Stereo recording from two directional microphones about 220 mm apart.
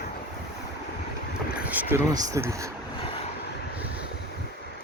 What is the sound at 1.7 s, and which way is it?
Speech, 10° right (ahead or behind).